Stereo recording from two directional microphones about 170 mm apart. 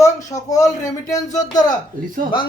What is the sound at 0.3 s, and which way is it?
Speech, 20° left (ahead or behind).